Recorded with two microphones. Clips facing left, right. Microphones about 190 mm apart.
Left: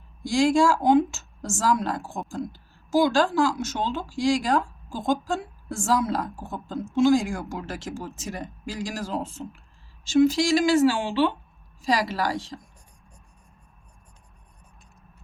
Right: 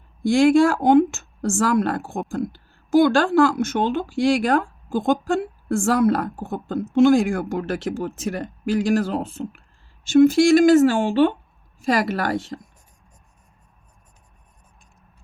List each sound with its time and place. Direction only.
0.2 s speech: 60° right (ahead or behind)
10.1 s speech: 55° right (ahead or behind)